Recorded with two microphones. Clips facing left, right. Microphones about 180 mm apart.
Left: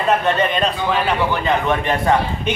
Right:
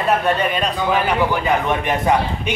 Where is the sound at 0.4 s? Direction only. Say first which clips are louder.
Left 1 dB; 10° right (ahead or behind).